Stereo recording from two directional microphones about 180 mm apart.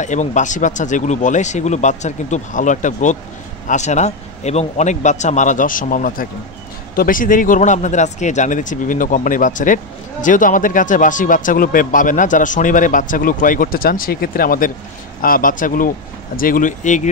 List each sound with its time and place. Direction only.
0.0 s speech: 40° left (ahead or behind)